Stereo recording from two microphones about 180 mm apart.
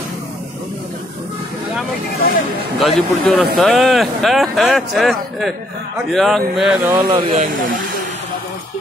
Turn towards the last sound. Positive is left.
turn(degrees=-50)  # may be behind; listen again after turning